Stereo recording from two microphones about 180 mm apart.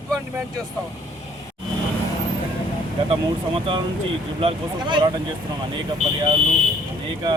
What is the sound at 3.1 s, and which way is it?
Speech, 30° right (ahead or behind).